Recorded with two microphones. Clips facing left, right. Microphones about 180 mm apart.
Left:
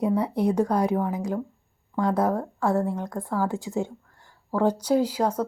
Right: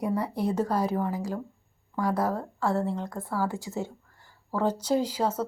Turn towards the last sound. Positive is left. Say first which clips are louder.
# left 3 dB
turn(degrees=10)  # may be behind; listen again after turning